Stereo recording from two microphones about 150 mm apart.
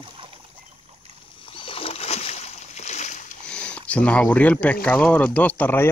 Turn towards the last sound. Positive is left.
turn(degrees=15)  # may be behind; listen again after turning